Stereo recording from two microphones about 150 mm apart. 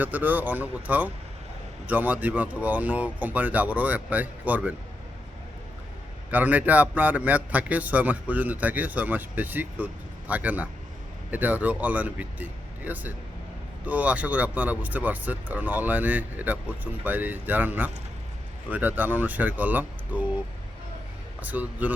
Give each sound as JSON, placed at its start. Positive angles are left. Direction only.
{"t": 0.0, "sound": "a man's voice", "side_deg": -10}
{"t": 6.3, "sound": "a man's voice", "side_deg": -10}
{"t": 21.4, "sound": "a man's voice", "side_deg": -10}